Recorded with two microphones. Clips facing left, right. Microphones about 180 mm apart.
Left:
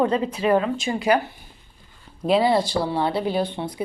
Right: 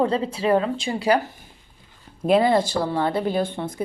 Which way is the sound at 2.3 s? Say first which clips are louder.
Right 1 dB; 50° right (ahead or behind).